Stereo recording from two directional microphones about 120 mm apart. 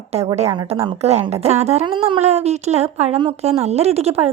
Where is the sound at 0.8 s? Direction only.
60° right (ahead or behind).